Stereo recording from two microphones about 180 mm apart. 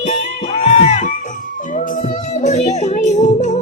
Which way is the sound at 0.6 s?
35° left (ahead or behind).